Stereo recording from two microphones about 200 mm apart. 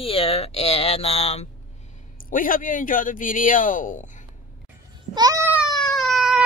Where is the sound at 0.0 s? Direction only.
30° left (ahead or behind).